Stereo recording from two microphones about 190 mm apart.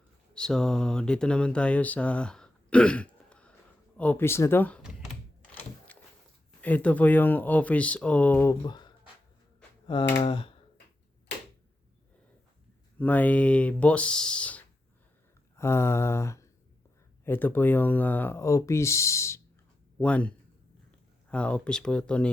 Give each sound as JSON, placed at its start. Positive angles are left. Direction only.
{"t": 0.3, "sound": "speech", "side_deg": 5}
{"t": 5.5, "sound": "a sound", "side_deg": 10}
{"t": 6.6, "sound": "speech", "side_deg": 10}
{"t": 8.6, "sound": "speech", "side_deg": 25}
{"t": 13.0, "sound": "speech", "side_deg": 10}